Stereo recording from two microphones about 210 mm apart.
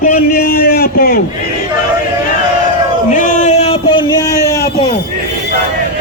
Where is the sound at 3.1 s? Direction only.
35° left (ahead or behind); by 4.7 s 15° left (ahead or behind).